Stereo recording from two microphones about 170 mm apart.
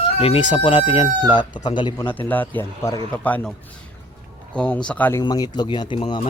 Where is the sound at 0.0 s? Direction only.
35° left (ahead or behind).